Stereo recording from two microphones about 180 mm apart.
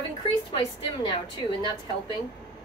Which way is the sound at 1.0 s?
25° left (ahead or behind).